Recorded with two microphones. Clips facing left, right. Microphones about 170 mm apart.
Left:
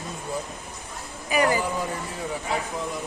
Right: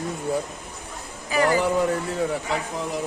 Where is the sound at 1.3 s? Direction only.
15° left (ahead or behind).